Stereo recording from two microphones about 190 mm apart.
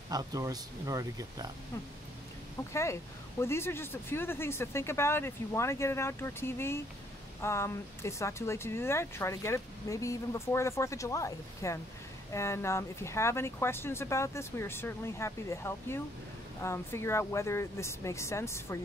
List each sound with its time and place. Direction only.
0.1 s speech: 20° right (ahead or behind)
2.7 s speech: 15° left (ahead or behind)